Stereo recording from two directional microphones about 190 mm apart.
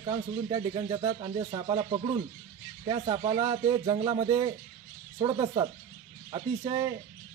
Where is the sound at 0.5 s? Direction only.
20° right (ahead or behind).